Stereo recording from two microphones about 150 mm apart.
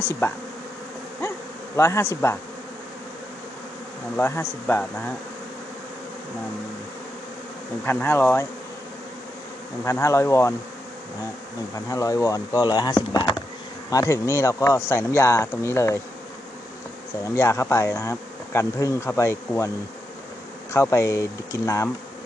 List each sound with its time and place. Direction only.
0.0 s speech: 15° left (ahead or behind)
1.7 s speech: 20° left (ahead or behind)
4.2 s speech: 15° left (ahead or behind)
7.9 s speech: 15° left (ahead or behind)
9.8 s speech: 20° left (ahead or behind)
11.9 s speech: 20° left (ahead or behind)
17.2 s speech: 20° left (ahead or behind)
20.7 s speech: 20° left (ahead or behind)